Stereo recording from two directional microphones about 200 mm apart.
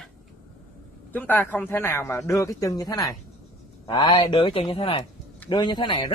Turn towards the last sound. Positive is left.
turn(degrees=20)  # may be behind; listen again after turning